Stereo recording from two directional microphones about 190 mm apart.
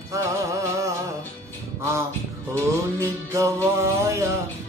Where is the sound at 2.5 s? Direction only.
15° right (ahead or behind).